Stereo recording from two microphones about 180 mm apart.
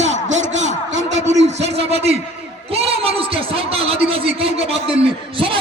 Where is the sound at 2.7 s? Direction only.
35° right (ahead or behind).